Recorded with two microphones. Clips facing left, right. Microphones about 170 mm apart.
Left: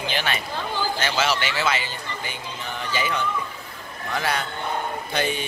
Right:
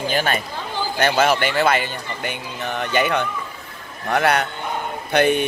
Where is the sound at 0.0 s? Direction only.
45° right (ahead or behind).